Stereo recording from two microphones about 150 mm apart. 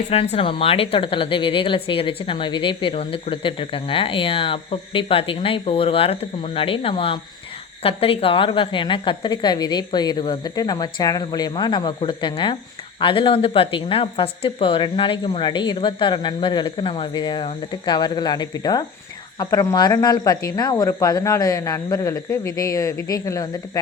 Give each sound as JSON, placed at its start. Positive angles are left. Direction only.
{"t": 0.1, "sound": "a woman's voice", "side_deg": 40}